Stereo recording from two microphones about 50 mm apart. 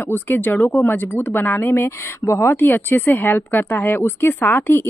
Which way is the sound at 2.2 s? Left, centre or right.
Left.